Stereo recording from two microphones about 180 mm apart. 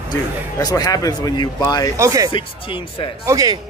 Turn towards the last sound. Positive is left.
turn(degrees=-20)  # may be behind; listen again after turning